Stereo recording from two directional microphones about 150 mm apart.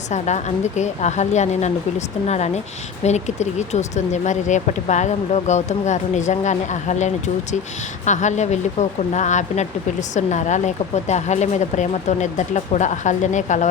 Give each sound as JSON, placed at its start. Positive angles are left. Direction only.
{"t": 0.1, "sound": "speech", "side_deg": 50}